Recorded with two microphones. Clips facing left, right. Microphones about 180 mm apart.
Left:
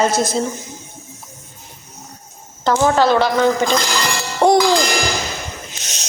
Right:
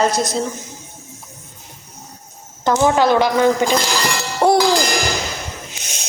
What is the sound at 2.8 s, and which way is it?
Speech, 15° right (ahead or behind).